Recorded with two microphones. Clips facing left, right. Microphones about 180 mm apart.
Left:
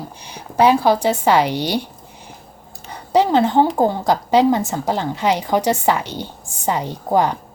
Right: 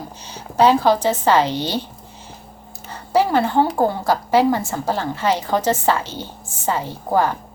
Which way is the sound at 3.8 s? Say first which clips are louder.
Left 2 dB; 20° left (ahead or behind).